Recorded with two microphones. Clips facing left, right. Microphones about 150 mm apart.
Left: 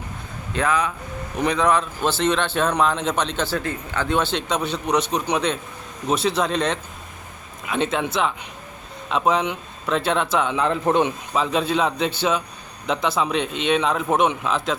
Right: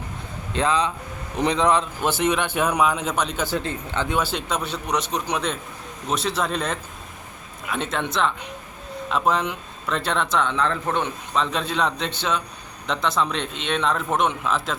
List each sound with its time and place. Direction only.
0.5 s a man's voice: 20° right (ahead or behind)
4.1 s a man's voice: 10° right (ahead or behind)